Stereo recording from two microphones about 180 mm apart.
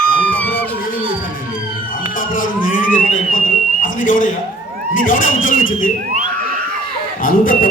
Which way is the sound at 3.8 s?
45° left (ahead or behind).